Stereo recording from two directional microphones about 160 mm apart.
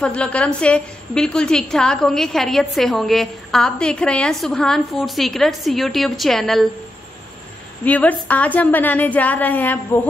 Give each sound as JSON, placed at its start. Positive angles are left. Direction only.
{"t": 0.0, "sound": "a woman's voice", "side_deg": 5}
{"t": 7.8, "sound": "a woman's voice", "side_deg": 10}